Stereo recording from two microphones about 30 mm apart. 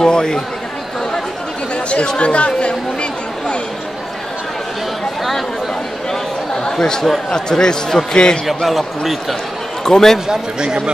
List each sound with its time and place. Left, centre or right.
0.0 s speech: left
2.0 s chatter: left
6.6 s chatter: centre
7.2 s speech: left
8.6 s speech: centre
9.8 s speech: centre
10.2 s speech: right